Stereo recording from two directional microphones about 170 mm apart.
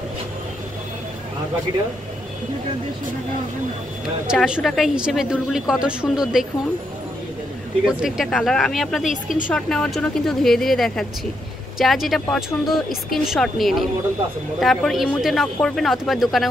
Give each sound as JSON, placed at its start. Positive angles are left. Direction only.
{"t": 4.3, "sound": "a woman's voice", "side_deg": -5}
{"t": 7.8, "sound": "a woman's voice", "side_deg": 0}